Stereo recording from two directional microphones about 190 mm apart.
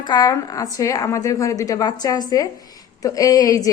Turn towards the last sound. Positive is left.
turn(degrees=20)  # may be behind; listen again after turning